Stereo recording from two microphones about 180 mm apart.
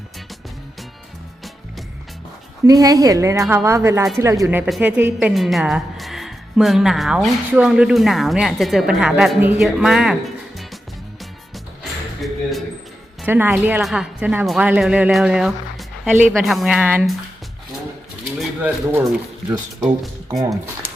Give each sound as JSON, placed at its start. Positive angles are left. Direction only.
{"t": 2.6, "sound": "a woman's voice", "side_deg": -20}
{"t": 11.5, "sound": "music", "side_deg": 0}
{"t": 13.2, "sound": "a woman's voice", "side_deg": -10}
{"t": 18.3, "sound": "speech", "side_deg": -10}